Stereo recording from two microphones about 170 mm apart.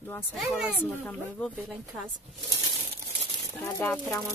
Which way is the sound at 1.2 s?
10° left (ahead or behind).